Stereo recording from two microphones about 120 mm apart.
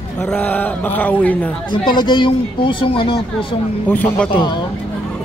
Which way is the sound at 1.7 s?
40° left (ahead or behind).